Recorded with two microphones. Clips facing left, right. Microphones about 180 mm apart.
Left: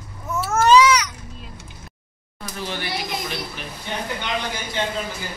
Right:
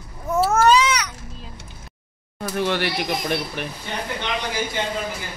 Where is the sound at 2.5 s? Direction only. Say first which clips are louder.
Right 6 dB; 65° right (ahead or behind).